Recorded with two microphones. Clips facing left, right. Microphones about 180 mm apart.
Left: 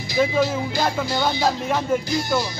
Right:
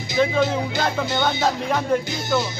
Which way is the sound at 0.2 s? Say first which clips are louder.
Even; 10° left (ahead or behind).